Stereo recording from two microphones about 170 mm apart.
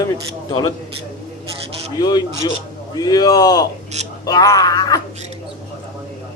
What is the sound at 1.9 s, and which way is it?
Speech, 25° left (ahead or behind).